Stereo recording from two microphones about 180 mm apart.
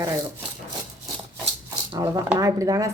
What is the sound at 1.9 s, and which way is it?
Speech, 20° right (ahead or behind).